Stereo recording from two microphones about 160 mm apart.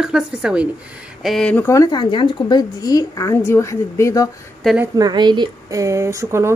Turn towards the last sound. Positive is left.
turn(degrees=-20)  # may be behind; listen again after turning